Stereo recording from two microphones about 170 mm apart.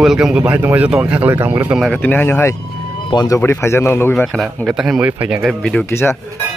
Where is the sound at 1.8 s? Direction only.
5° left (ahead or behind).